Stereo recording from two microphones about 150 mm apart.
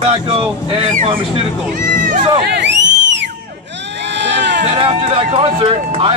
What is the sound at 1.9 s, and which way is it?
Run, 65° right (ahead or behind).